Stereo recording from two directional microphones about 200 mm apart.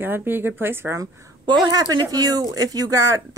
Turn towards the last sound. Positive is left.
turn(degrees=-15)  # may be behind; listen again after turning